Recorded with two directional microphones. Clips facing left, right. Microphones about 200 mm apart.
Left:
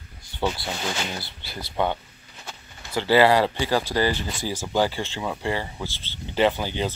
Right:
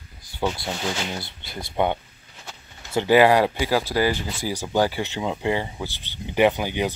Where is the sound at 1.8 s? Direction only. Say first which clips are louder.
Right 2 dB; 20° right (ahead or behind).